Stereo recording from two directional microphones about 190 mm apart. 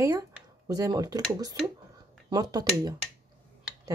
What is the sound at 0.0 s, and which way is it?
Speech, 15° right (ahead or behind).